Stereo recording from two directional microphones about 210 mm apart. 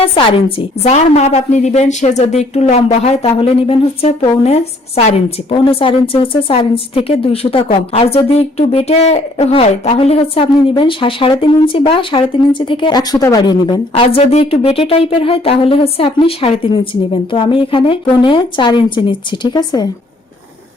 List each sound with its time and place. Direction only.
0.0 s a woman's voice: 25° left (ahead or behind)